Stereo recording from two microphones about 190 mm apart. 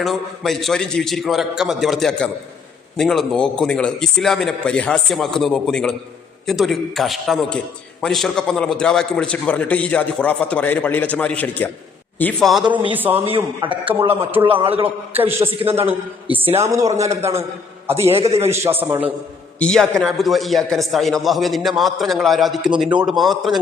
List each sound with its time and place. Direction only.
0.0 s a man's voice: centre (ahead or behind)
13.2 s a man's voice: 25° right (ahead or behind)
15.1 s a man's voice: 10° right (ahead or behind)
15.4 s a man's voice: 30° right (ahead or behind)
16.6 s a man's voice: 15° right (ahead or behind)
18.0 s a man's voice: 30° right (ahead or behind)
18.8 s a man's voice: 10° right (ahead or behind)
19.5 s a man's voice: 5° left (ahead or behind)